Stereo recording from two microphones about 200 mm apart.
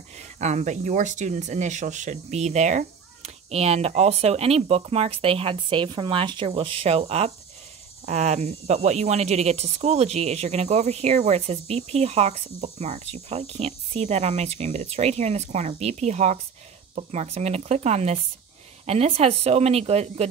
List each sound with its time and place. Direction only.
0.4 s speech: 35° right (ahead or behind)